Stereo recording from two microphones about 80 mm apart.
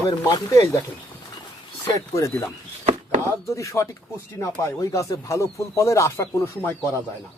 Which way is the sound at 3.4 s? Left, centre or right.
Left.